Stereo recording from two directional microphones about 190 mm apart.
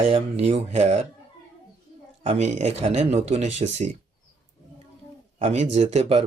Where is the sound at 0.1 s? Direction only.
35° right (ahead or behind).